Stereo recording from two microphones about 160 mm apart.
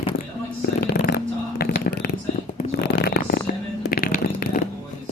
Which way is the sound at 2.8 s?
80° left.